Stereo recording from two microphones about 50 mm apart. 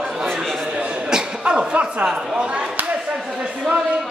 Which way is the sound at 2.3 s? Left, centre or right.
Centre.